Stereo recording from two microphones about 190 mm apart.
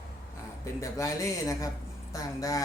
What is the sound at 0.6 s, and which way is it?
Speech, 15° left (ahead or behind).